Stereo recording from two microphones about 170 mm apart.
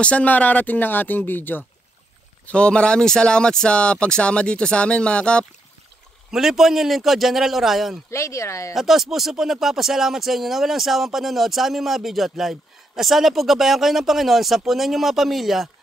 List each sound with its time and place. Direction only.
0.0 s speech: 10° left (ahead or behind)
8.1 s speech: 15° left (ahead or behind)
8.7 s speech: centre (ahead or behind)